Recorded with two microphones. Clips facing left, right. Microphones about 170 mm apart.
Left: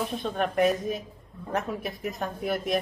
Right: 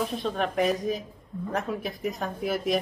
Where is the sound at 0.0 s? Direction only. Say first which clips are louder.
Right 1 dB; centre (ahead or behind).